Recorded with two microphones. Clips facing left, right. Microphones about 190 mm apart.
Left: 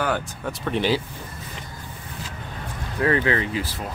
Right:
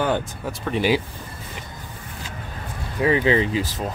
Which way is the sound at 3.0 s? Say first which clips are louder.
Right 3 dB; 15° right (ahead or behind).